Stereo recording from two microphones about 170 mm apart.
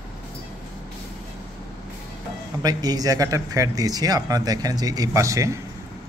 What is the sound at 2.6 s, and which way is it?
Speech, 20° right (ahead or behind).